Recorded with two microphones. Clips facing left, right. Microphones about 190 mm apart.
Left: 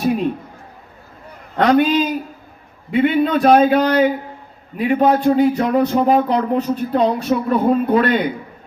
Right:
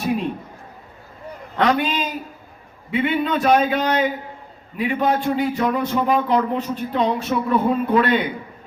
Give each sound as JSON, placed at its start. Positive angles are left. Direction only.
{"t": 1.5, "sound": "speech", "side_deg": 45}